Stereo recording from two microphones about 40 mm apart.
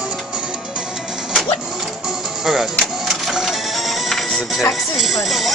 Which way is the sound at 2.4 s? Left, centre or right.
Centre.